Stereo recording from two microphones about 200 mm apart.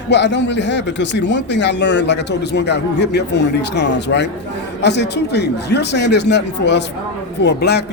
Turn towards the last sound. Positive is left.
turn(degrees=55)  # may be behind; listen again after turning